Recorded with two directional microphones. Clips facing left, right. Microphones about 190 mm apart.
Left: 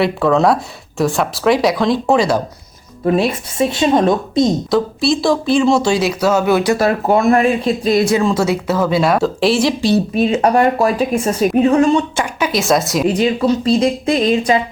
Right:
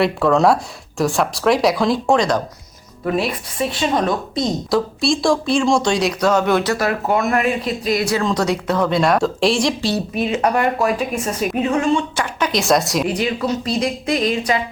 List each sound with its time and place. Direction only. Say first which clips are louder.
0.0 s speech: left 1 dB; centre (ahead or behind)
3.0 s speech: left 5 dB; 30° left (ahead or behind)
4.7 s speech: left 3 dB; centre (ahead or behind)
6.7 s speech: left 5 dB; 30° left (ahead or behind)
8.2 s speech: left 3 dB; 5° left (ahead or behind)
9.8 s a woman's voice: left 6 dB; 25° left (ahead or behind)
12.2 s speech: left 2 dB; 5° left (ahead or behind)
13.1 s speech: left 6 dB; 25° left (ahead or behind)